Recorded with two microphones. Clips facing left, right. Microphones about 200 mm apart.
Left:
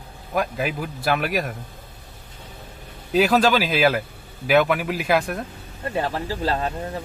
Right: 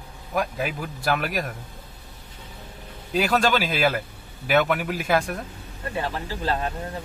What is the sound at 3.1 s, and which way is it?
A man's voice, centre (ahead or behind).